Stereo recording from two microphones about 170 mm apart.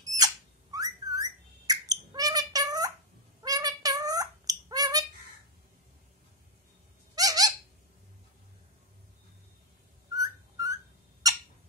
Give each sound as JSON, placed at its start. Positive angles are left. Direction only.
{"t": 0.0, "sound": "a sound", "side_deg": -20}
{"t": 7.2, "sound": "squeak", "side_deg": -20}
{"t": 10.1, "sound": "whistling", "side_deg": -20}